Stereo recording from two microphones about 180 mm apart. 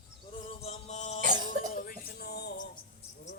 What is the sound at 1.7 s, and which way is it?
Music, 55° left (ahead or behind).